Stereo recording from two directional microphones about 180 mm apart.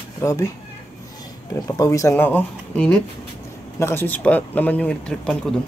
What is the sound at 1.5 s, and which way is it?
Speech, 20° left (ahead or behind).